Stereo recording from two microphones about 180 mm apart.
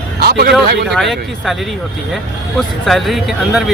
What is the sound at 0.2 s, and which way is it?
Speech, 60° right (ahead or behind).